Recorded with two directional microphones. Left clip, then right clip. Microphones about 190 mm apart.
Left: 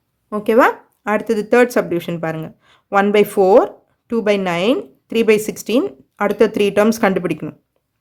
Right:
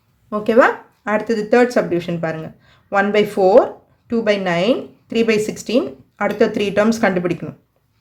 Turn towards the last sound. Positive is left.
turn(degrees=35)  # may be behind; listen again after turning